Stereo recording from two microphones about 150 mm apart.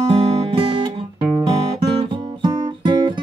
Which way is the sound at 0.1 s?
35° right (ahead or behind).